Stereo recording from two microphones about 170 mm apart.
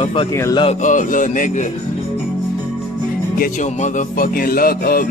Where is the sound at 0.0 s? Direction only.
30° left (ahead or behind).